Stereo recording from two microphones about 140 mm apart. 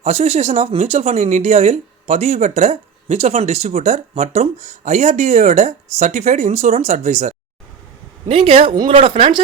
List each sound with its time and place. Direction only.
0.0 s speech: 50° right (ahead or behind)
8.3 s speech: 40° right (ahead or behind)
9.0 s speech: 45° right (ahead or behind)